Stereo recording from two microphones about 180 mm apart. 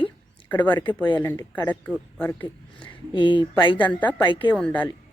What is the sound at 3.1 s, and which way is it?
Speech, 25° left (ahead or behind).